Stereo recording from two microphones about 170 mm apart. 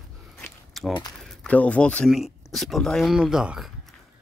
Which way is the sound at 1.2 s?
5° left (ahead or behind).